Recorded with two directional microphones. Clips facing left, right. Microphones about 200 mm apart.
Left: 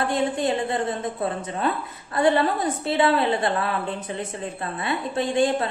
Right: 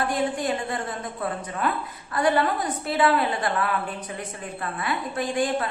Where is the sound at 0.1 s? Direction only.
25° left (ahead or behind).